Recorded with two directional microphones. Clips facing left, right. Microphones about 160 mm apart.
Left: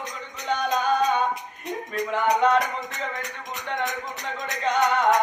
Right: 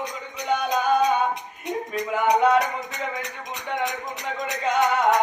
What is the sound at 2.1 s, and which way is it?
Music, 5° right (ahead or behind).